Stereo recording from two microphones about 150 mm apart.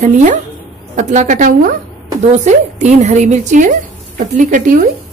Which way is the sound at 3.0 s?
50° right (ahead or behind).